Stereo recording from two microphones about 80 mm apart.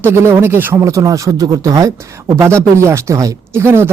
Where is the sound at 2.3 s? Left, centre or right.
Right.